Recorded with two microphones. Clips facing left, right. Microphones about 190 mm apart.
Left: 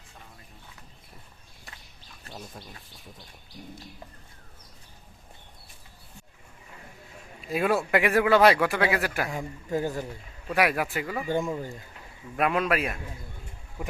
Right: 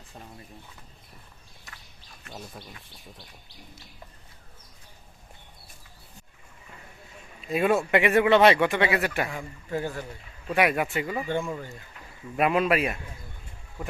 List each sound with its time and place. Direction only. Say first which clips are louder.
2.3 s a sound: right 1 dB; 35° left (ahead or behind)
7.4 s a man's voice: right 2 dB; centre (ahead or behind)
9.6 s speech: left 2 dB; 15° left (ahead or behind)
10.5 s a man's voice: right 1 dB; centre (ahead or behind)
11.4 s speech: left 3 dB; 20° left (ahead or behind)
12.4 s a man's voice: right 2 dB; 5° right (ahead or behind)